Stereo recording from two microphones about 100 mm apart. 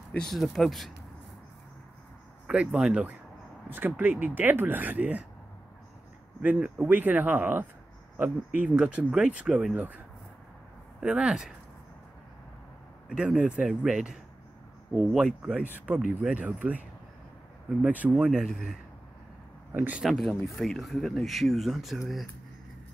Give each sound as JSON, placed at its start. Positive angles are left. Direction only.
{"t": 0.3, "sound": "speech", "side_deg": 0}
{"t": 2.4, "sound": "speech", "side_deg": -10}
{"t": 6.4, "sound": "speech", "side_deg": -15}
{"t": 9.8, "sound": "speech", "side_deg": -15}
{"t": 13.1, "sound": "speech", "side_deg": -10}
{"t": 19.7, "sound": "speech", "side_deg": -20}
{"t": 20.0, "sound": "speech", "side_deg": 0}